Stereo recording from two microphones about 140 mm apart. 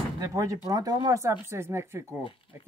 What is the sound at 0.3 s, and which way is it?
Speech, 25° right (ahead or behind).